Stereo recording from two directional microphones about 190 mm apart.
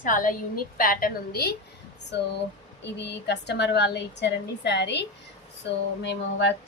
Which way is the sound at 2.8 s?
65° left (ahead or behind).